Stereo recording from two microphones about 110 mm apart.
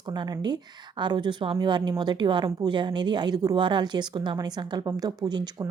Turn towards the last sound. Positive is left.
turn(degrees=-40)  # may be behind; listen again after turning